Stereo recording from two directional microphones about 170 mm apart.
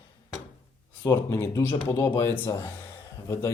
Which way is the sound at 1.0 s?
15° left (ahead or behind).